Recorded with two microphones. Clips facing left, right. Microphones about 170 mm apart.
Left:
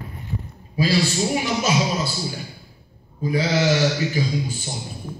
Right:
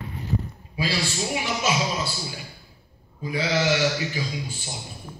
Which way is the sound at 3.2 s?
40° left (ahead or behind).